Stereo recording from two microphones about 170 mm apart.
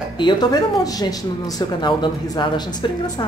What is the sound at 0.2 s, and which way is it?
Speech, 25° left (ahead or behind).